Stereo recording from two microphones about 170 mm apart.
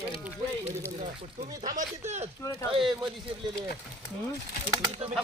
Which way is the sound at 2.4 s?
15° left (ahead or behind).